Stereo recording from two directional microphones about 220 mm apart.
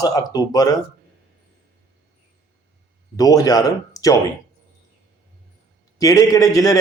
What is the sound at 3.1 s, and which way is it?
Speech, 15° left (ahead or behind).